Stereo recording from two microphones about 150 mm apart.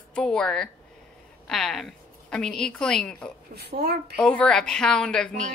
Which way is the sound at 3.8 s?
90° right.